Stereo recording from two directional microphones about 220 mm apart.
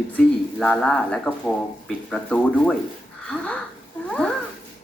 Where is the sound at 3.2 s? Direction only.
5° left (ahead or behind).